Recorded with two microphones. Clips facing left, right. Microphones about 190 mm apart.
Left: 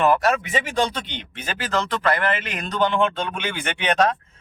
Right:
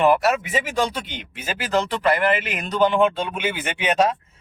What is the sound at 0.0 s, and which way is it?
Speech, 10° right (ahead or behind).